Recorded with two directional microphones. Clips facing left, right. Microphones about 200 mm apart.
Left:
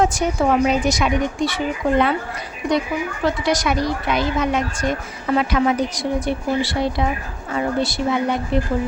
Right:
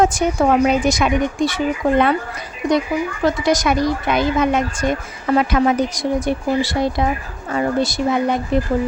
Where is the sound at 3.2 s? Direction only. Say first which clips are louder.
Right 3 dB; 45° right (ahead or behind).